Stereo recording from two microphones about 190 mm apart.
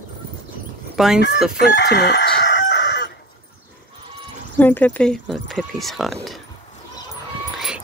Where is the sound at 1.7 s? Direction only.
65° left (ahead or behind).